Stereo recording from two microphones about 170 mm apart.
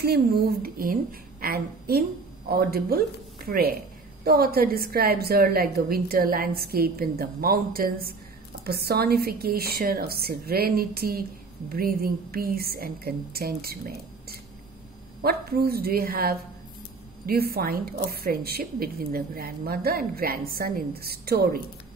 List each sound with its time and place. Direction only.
0.0 s a woman's voice: 65° right (ahead or behind)